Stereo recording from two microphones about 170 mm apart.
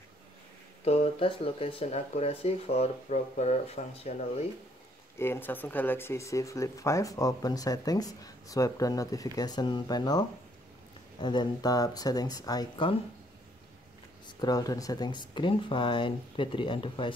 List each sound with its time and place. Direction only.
0.8 s speech: 35° left (ahead or behind)
5.2 s speech: 15° left (ahead or behind)
14.2 s speech: 25° left (ahead or behind)